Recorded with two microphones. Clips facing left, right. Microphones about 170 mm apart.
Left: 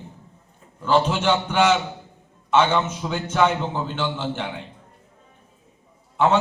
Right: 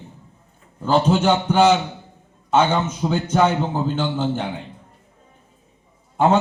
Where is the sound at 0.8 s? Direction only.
40° right (ahead or behind).